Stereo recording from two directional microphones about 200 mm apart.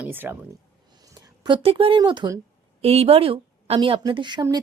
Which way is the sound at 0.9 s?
20° right (ahead or behind).